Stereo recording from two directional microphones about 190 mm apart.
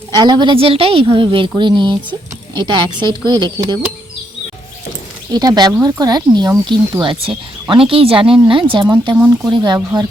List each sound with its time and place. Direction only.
0.2 s speech: 25° right (ahead or behind)
5.3 s speech: 20° right (ahead or behind)
9.1 s speech: 5° right (ahead or behind)
9.5 s speech: 20° right (ahead or behind)